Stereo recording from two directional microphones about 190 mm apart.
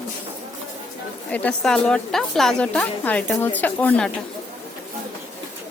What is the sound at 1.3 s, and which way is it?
Speech, 10° left (ahead or behind).